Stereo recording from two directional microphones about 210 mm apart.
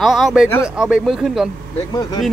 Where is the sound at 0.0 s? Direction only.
Centre (ahead or behind).